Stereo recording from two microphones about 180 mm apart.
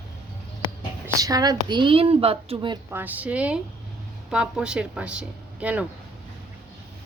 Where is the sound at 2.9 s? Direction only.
10° right (ahead or behind).